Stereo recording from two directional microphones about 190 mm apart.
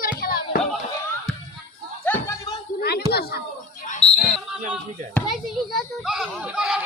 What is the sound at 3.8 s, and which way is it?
Basketball bounce, 35° left (ahead or behind).